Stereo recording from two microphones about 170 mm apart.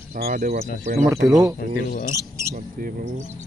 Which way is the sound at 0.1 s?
60° right (ahead or behind).